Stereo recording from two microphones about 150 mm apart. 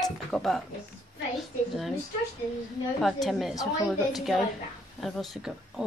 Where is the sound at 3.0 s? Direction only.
Centre (ahead or behind).